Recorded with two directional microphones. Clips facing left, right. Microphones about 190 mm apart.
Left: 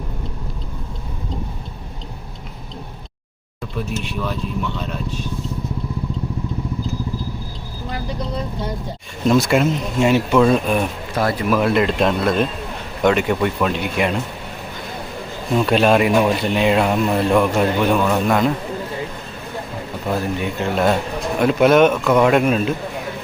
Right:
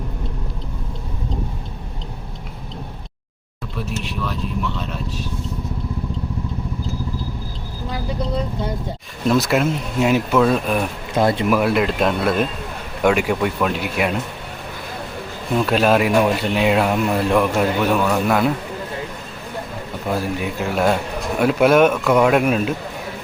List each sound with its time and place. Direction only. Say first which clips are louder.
3.8 s speech: even; centre (ahead or behind)
9.2 s speech: left 2 dB; 5° right (ahead or behind)
11.1 s speech: right 3 dB; 25° right (ahead or behind)
11.5 s speech: left 1 dB; 5° right (ahead or behind)
15.5 s speech: left 1 dB; centre (ahead or behind)
20.1 s speech: left 1 dB; 5° right (ahead or behind)